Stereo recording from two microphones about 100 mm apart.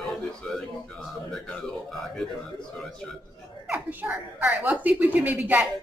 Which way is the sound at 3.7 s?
20° right (ahead or behind).